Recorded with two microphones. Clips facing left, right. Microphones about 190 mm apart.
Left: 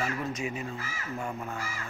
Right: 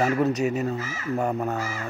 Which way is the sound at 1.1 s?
65° right (ahead or behind).